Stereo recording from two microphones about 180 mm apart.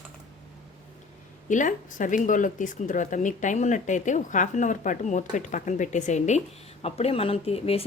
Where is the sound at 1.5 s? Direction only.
45° left (ahead or behind).